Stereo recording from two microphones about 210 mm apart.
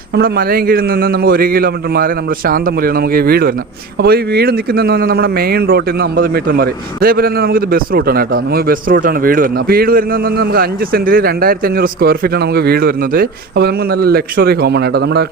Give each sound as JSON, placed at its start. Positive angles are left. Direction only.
{"t": 0.2, "sound": "speech", "side_deg": -45}